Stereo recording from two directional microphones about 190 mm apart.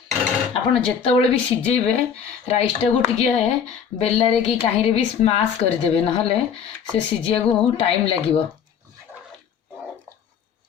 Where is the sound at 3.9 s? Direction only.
35° left (ahead or behind).